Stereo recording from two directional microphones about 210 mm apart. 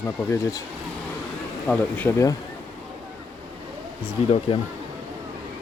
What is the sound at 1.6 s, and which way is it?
Speech, 10° left (ahead or behind).